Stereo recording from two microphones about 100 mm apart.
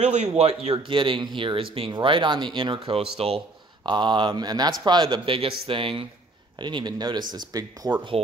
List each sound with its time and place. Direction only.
0.0 s speech: 90° right
0.9 s speech: 55° right (ahead or behind)
2.9 s speech: 75° right (ahead or behind)
3.8 s speech: 50° right (ahead or behind)
6.6 s speech: 50° right (ahead or behind)